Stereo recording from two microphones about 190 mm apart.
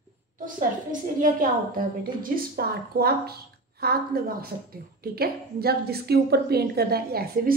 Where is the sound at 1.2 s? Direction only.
45° right (ahead or behind).